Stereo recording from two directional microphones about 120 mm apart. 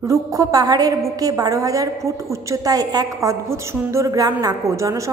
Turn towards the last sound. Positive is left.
turn(degrees=-25)  # may be behind; listen again after turning